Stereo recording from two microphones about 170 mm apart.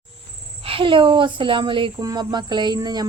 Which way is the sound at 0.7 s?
30° right (ahead or behind).